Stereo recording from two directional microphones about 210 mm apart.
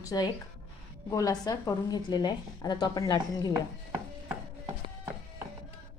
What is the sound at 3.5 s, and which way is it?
Chopping, 10° right (ahead or behind).